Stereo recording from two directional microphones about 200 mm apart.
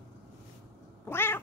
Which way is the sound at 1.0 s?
10° left (ahead or behind).